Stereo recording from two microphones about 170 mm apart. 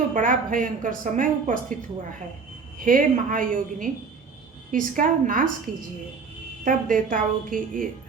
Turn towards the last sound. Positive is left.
turn(degrees=-55)  # may be behind; listen again after turning